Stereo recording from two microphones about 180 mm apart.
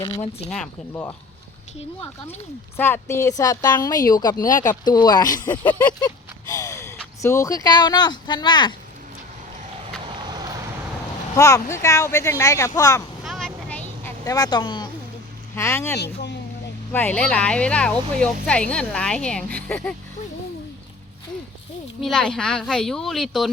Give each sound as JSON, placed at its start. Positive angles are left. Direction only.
{"t": 0.0, "sound": "speech", "side_deg": 35}
{"t": 0.5, "sound": "a woman's voice", "side_deg": 5}
{"t": 2.7, "sound": "a woman's voice", "side_deg": 10}
{"t": 10.2, "sound": "vehicle", "side_deg": -25}
{"t": 11.3, "sound": "speech", "side_deg": 20}
{"t": 13.2, "sound": "vehicle", "side_deg": 0}
{"t": 15.5, "sound": "a woman's voice", "side_deg": 15}
{"t": 22.0, "sound": "a woman's voice", "side_deg": 5}